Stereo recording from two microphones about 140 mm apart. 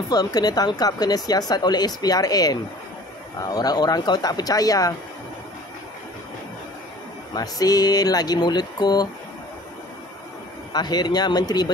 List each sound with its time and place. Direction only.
0.1 s speech: 30° left (ahead or behind)
7.3 s speech: 25° left (ahead or behind)
10.7 s speech: 30° left (ahead or behind)